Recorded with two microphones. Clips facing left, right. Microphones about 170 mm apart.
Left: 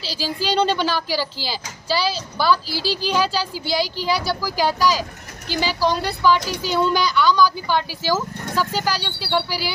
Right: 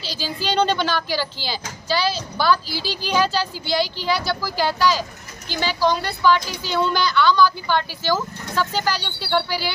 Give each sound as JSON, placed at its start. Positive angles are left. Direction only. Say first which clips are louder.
{"t": 0.2, "sound": "a woman's voice", "louder": "left 1 dB", "side_deg": 5}
{"t": 2.7, "sound": "speech", "louder": "left 4 dB", "side_deg": 35}
{"t": 3.1, "sound": "speech", "louder": "right 3 dB", "side_deg": 5}